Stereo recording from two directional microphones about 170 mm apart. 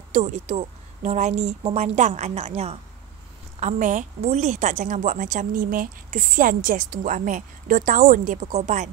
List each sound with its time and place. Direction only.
0.1 s a woman's voice: 45° right (ahead or behind)
8.4 s a woman's voice: 45° right (ahead or behind)